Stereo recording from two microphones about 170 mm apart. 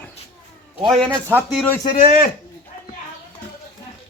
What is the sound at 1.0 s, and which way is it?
Speech, 10° right (ahead or behind).